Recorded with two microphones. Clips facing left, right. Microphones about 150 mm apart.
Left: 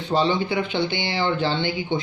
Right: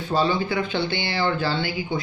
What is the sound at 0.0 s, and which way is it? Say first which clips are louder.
Speech: left 1 dB; 20° left (ahead or behind).